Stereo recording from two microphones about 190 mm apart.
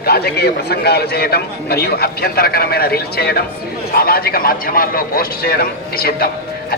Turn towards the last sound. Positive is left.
turn(degrees=55)  # may be behind; listen again after turning